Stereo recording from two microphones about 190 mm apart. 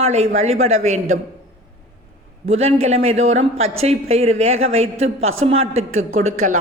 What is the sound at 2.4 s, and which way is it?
A man's voice, 35° right (ahead or behind).